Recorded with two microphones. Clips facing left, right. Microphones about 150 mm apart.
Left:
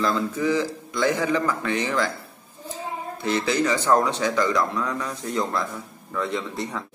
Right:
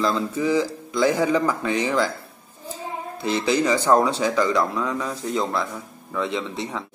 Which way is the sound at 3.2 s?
30° right (ahead or behind).